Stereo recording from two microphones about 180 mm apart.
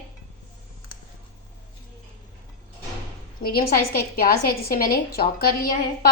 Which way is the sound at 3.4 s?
55° left (ahead or behind).